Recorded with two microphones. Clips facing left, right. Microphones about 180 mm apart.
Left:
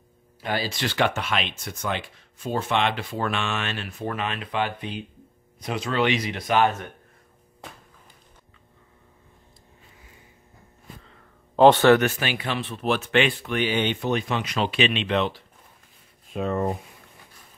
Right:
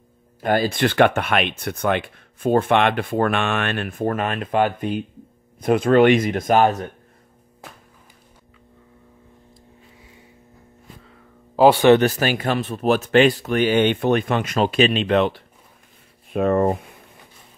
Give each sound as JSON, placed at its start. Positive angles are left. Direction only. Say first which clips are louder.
{"t": 0.4, "sound": "speech", "louder": "right 9 dB", "side_deg": -50}
{"t": 11.1, "sound": "a sound", "louder": "right 5 dB", "side_deg": -5}
{"t": 12.0, "sound": "speech", "louder": "right 6 dB", "side_deg": -40}